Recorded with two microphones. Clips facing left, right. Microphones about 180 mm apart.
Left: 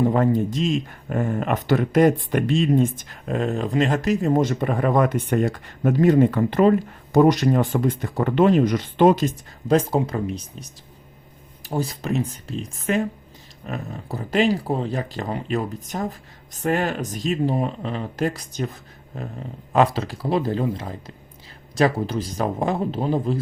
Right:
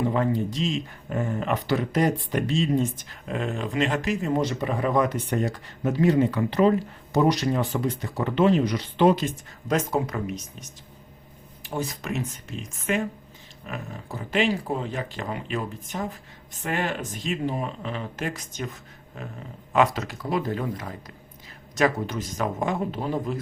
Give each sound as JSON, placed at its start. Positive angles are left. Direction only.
{"t": 0.0, "sound": "speech", "side_deg": 45}